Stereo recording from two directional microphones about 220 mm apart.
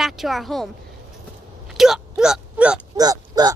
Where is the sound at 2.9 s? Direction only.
15° right (ahead or behind).